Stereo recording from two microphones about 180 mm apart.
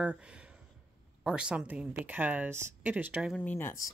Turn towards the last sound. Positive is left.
turn(degrees=15)  # may be behind; listen again after turning